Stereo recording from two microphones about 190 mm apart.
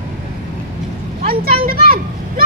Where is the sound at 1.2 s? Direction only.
50° right (ahead or behind).